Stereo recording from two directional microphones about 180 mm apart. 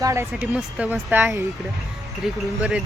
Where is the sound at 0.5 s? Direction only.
5° right (ahead or behind).